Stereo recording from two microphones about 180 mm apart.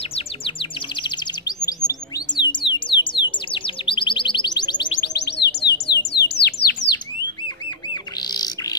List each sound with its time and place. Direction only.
0.1 s chirp: 25° left (ahead or behind)
4.9 s bird: 70° left (ahead or behind)
7.9 s bird: 20° left (ahead or behind)